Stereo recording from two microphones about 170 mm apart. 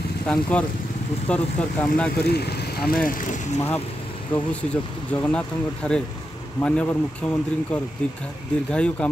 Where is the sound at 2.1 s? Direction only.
70° left (ahead or behind).